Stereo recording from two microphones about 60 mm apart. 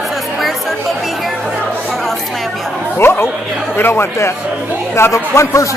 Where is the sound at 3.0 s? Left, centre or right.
Left.